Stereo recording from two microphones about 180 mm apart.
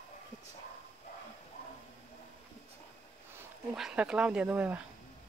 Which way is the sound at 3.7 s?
5° right (ahead or behind).